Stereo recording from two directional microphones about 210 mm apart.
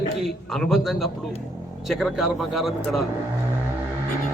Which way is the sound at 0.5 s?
Centre (ahead or behind).